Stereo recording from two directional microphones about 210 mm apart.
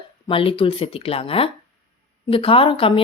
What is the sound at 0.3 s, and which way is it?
A woman's voice, 25° left (ahead or behind).